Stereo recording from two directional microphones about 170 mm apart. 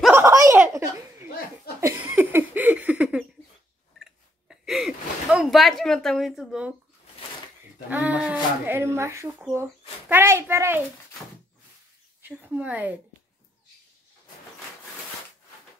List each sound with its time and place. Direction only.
0.1 s giggle: 15° right (ahead or behind)
1.8 s a sound: 15° right (ahead or behind)
7.9 s speech: 10° right (ahead or behind)
12.2 s speech: 10° right (ahead or behind)